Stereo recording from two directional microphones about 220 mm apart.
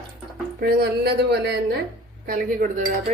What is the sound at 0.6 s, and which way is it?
Speech, 45° right (ahead or behind).